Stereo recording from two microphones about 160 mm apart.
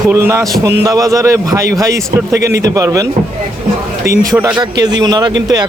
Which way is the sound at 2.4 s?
90° right.